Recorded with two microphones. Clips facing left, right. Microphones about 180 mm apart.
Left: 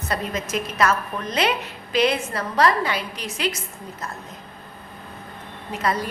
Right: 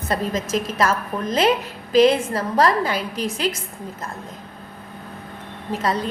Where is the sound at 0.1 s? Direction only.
40° right (ahead or behind).